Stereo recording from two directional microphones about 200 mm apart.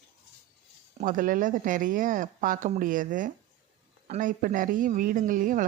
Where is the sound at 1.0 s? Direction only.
40° right (ahead or behind).